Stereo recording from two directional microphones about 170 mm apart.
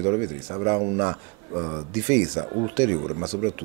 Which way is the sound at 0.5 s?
20° right (ahead or behind).